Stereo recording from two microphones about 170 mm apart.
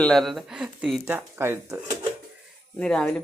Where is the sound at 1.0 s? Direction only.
15° right (ahead or behind).